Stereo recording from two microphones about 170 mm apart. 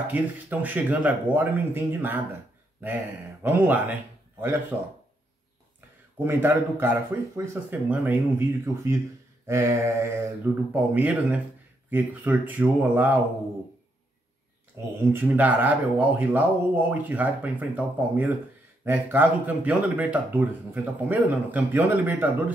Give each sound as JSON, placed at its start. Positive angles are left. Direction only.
{"t": 0.0, "sound": "a man's voice", "side_deg": -10}
{"t": 3.4, "sound": "a man's voice", "side_deg": -10}
{"t": 6.1, "sound": "a man's voice", "side_deg": -10}
{"t": 15.0, "sound": "a man's voice", "side_deg": -10}